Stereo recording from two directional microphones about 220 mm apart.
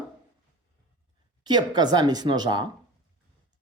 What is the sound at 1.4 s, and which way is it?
Speech, 20° right (ahead or behind).